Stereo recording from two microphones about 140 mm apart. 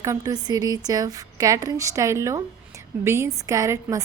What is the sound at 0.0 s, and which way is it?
A woman's voice, 25° right (ahead or behind).